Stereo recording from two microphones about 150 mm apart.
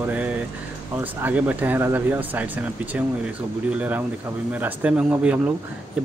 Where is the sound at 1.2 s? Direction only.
10° right (ahead or behind).